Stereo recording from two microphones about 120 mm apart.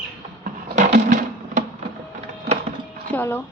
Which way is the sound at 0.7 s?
90° right.